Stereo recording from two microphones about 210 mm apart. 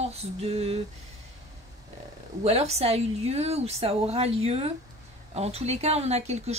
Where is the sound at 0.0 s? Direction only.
30° right (ahead or behind).